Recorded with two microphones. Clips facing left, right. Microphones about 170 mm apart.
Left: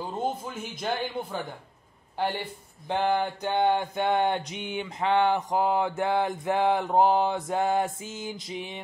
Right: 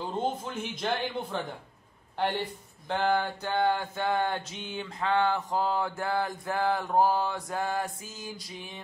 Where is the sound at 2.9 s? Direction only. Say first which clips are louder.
Left 2 dB; 15° left (ahead or behind).